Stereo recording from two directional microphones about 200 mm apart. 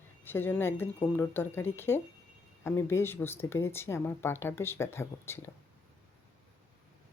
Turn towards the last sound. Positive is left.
turn(degrees=10)  # may be behind; listen again after turning